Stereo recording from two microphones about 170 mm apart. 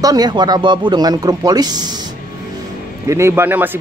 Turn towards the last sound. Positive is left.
turn(degrees=-10)  # may be behind; listen again after turning